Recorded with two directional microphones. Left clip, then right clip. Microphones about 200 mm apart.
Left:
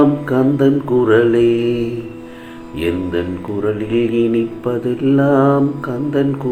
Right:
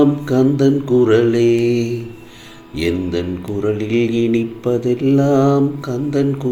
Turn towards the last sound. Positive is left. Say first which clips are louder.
# left 1 dB
turn(degrees=-45)  # may be behind; listen again after turning